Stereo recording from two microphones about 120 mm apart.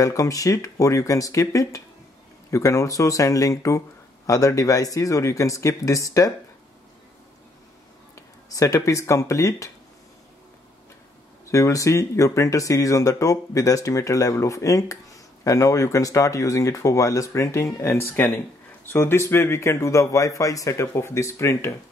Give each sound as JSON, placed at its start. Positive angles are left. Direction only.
{"t": 0.0, "sound": "speech", "side_deg": 30}
{"t": 8.5, "sound": "speech", "side_deg": 30}
{"t": 11.5, "sound": "speech", "side_deg": 25}